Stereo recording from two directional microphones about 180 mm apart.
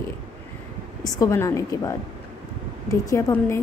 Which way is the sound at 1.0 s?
20° left (ahead or behind).